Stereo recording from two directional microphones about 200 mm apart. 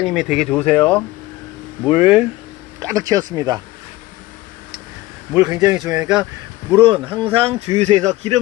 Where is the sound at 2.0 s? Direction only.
5° right (ahead or behind).